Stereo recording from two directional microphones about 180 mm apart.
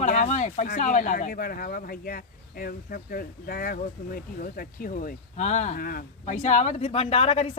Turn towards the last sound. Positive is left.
turn(degrees=35)  # may be behind; listen again after turning